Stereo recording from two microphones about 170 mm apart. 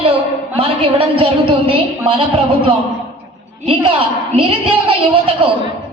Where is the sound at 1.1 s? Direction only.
30° right (ahead or behind).